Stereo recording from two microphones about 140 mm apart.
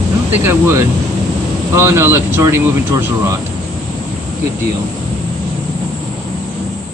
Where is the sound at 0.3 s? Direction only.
15° right (ahead or behind).